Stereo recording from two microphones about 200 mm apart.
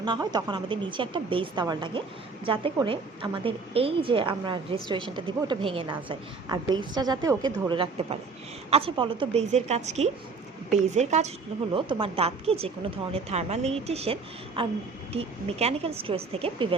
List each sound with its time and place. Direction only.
0.0 s a woman's voice: 20° right (ahead or behind)